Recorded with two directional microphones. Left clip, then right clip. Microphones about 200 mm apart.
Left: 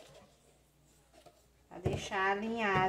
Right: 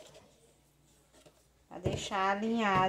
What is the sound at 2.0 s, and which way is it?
Speech, 35° right (ahead or behind).